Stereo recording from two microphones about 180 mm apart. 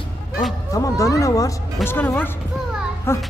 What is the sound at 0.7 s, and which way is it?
Speech, 20° left (ahead or behind).